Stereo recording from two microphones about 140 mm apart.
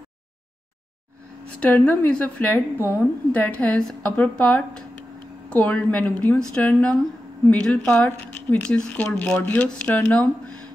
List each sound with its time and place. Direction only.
1.6 s speech: 10° left (ahead or behind)